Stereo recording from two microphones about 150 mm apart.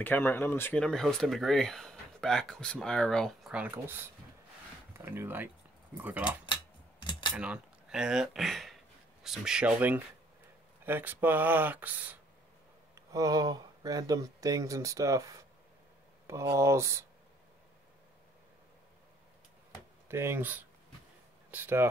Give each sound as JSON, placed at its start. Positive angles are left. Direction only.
{"t": 0.0, "sound": "speech", "side_deg": 15}
{"t": 6.4, "sound": "typewriter", "side_deg": 30}
{"t": 7.3, "sound": "speech", "side_deg": -5}
{"t": 13.1, "sound": "speech", "side_deg": -25}
{"t": 16.5, "sound": "speech", "side_deg": -20}
{"t": 20.1, "sound": "speech", "side_deg": -15}